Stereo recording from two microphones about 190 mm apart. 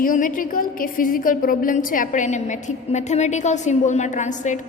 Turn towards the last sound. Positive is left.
turn(degrees=40)  # may be behind; listen again after turning